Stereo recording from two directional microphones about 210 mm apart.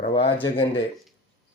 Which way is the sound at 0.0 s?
25° left (ahead or behind).